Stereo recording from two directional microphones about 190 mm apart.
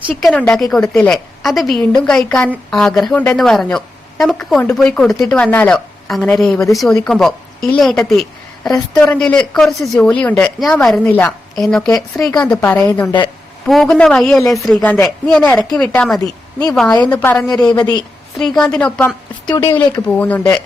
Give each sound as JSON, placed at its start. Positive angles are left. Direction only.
{"t": 0.1, "sound": "a woman's voice", "side_deg": 0}
{"t": 17.7, "sound": "a woman's voice", "side_deg": 20}
{"t": 18.3, "sound": "a woman's voice", "side_deg": 0}